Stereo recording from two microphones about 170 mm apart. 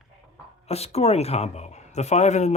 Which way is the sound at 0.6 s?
35° left (ahead or behind).